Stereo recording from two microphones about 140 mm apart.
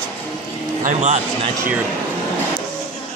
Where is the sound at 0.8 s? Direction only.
60° right (ahead or behind).